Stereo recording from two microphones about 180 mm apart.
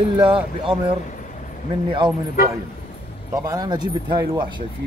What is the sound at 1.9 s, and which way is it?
Speech, 25° right (ahead or behind).